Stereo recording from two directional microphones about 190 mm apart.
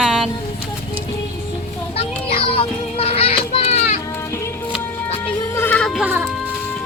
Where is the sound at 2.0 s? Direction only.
30° left (ahead or behind).